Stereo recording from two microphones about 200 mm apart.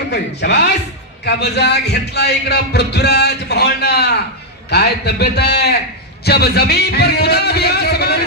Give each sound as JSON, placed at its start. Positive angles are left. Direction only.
{"t": 0.1, "sound": "speech", "side_deg": 55}